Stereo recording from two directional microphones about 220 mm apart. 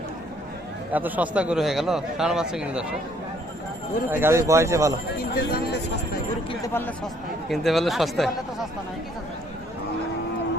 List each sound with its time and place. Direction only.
0.9 s speech: 10° right (ahead or behind)
4.1 s a man's voice: 10° right (ahead or behind)
5.2 s a sound: 45° left (ahead or behind)
6.5 s speech: 10° left (ahead or behind)